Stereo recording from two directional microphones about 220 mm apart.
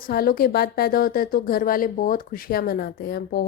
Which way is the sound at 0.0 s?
45° left (ahead or behind).